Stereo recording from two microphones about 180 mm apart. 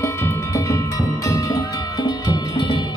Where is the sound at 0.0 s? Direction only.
15° left (ahead or behind).